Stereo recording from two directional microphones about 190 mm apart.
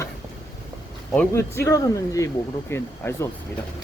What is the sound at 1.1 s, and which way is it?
Speech, 10° left (ahead or behind).